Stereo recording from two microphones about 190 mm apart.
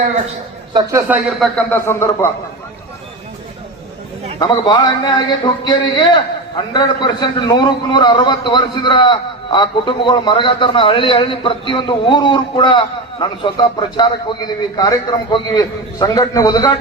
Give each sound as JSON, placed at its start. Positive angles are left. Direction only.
{"t": 0.7, "sound": "a man's voice", "side_deg": -20}
{"t": 0.9, "sound": "speech", "side_deg": -5}
{"t": 1.5, "sound": "a man's voice", "side_deg": 10}
{"t": 4.4, "sound": "a man's voice", "side_deg": 25}